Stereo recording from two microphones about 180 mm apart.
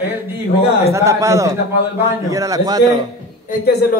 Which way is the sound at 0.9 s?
15° right (ahead or behind).